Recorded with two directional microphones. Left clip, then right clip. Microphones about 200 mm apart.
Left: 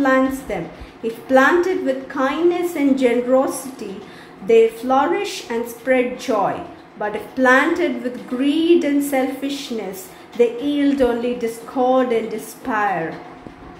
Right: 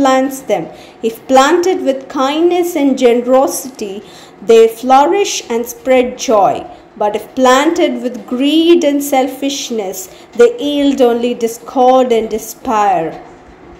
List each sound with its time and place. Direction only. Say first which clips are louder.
0.0 s a woman's voice: right 6 dB; 25° right (ahead or behind)